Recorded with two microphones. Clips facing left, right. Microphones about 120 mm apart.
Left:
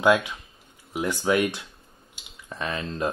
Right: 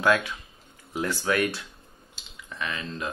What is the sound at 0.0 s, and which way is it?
Speech, 20° left (ahead or behind).